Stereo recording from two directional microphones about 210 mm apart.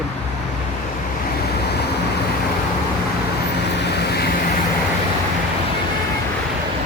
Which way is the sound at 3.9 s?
50° left (ahead or behind).